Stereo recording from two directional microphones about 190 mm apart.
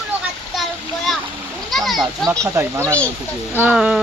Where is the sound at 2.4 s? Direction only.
15° right (ahead or behind).